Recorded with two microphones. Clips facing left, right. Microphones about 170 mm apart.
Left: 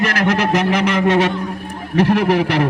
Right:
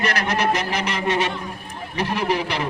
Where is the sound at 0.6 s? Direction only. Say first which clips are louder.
Left 8 dB; 70° left (ahead or behind).